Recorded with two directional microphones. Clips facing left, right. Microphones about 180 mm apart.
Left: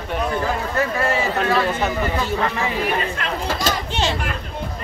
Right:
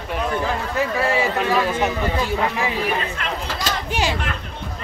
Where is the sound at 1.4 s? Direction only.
15° right (ahead or behind).